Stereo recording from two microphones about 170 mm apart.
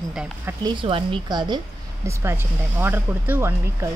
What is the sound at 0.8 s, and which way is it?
Speech, 30° right (ahead or behind).